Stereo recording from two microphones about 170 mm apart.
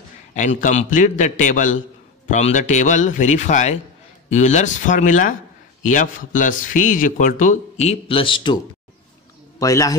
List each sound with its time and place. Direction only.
0.3 s a man's voice: 45° left (ahead or behind); by 8.5 s 30° left (ahead or behind)
9.6 s a man's voice: 20° left (ahead or behind)